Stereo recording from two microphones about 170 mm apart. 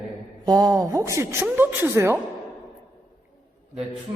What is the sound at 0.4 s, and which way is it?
Speech, 25° right (ahead or behind).